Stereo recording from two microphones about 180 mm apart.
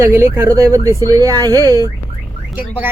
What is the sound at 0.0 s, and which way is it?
Speech, 15° right (ahead or behind).